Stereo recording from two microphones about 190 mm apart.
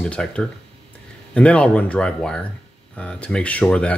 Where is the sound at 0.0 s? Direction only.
5° left (ahead or behind).